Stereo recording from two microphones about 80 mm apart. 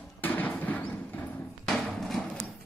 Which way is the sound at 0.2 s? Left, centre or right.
Left.